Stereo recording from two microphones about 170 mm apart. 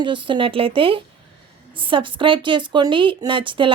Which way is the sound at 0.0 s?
30° right (ahead or behind).